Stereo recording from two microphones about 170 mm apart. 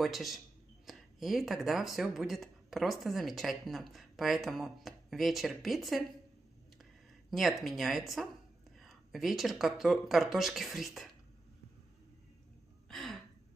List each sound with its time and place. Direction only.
0.0 s speech: centre (ahead or behind)
7.2 s speech: centre (ahead or behind)
12.8 s gasp: centre (ahead or behind)